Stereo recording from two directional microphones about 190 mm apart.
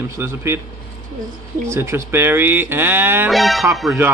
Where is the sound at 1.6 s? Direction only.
15° right (ahead or behind).